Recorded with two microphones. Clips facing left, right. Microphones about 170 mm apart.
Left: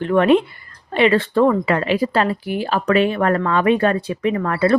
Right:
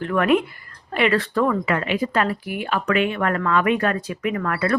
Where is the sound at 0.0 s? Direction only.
25° left (ahead or behind).